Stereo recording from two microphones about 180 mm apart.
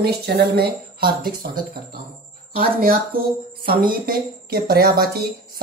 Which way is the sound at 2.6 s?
55° right (ahead or behind).